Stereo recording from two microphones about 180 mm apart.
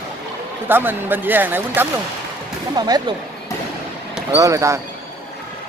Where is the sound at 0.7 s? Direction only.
10° right (ahead or behind).